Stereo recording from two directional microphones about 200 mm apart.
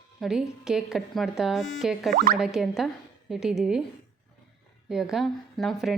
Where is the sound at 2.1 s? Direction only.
45° right (ahead or behind).